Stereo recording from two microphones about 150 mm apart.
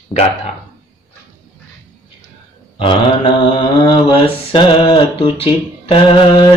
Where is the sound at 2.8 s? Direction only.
35° left (ahead or behind).